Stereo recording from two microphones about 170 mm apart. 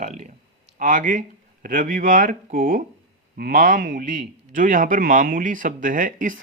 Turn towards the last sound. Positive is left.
turn(degrees=-50)  # may be behind; listen again after turning